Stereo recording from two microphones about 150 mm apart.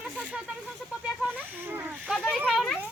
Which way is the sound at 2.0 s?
Centre (ahead or behind).